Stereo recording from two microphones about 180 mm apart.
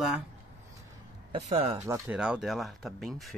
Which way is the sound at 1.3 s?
35° right (ahead or behind).